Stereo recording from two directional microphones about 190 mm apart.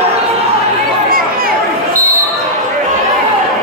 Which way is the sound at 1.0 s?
50° right (ahead or behind).